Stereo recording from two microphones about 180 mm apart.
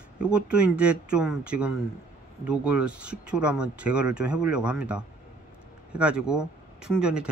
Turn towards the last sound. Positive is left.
turn(degrees=-5)  # may be behind; listen again after turning